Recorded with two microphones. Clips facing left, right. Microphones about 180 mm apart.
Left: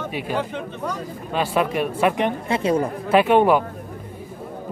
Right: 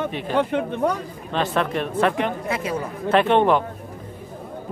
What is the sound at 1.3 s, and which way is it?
Speech, 10° left (ahead or behind).